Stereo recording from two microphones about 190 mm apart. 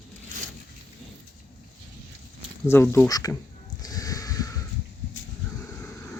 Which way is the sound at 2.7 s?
10° left (ahead or behind).